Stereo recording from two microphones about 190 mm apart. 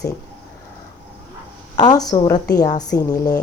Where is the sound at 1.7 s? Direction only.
20° left (ahead or behind).